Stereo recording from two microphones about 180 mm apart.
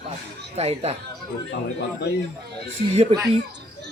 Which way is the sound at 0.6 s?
35° right (ahead or behind).